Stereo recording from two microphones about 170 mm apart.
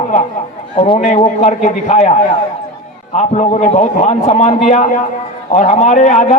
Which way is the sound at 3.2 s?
40° left (ahead or behind).